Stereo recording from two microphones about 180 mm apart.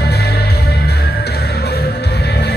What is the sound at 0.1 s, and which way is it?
Music, 60° left (ahead or behind).